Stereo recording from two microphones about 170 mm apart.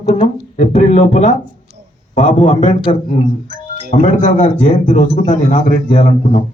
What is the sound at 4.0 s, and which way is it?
Speech, 45° left (ahead or behind).